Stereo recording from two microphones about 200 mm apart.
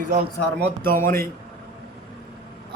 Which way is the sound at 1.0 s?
15° left (ahead or behind).